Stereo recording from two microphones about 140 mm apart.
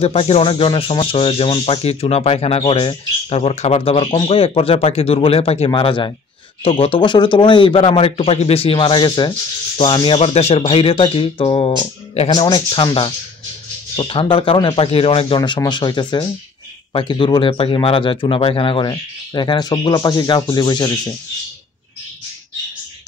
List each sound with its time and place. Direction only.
0.0 s speech: 45° left (ahead or behind)
5.7 s speech: 35° left (ahead or behind)
12.3 s speech: 30° left (ahead or behind)